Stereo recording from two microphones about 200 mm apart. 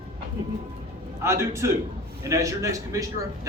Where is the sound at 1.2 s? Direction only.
15° right (ahead or behind).